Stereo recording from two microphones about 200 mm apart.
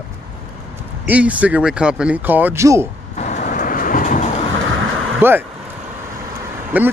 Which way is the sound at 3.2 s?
35° left (ahead or behind).